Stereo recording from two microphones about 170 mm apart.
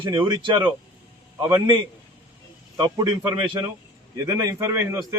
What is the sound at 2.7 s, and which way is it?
Speech, 25° right (ahead or behind).